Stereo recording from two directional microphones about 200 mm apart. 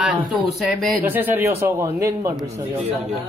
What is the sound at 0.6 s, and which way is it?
Speech, centre (ahead or behind).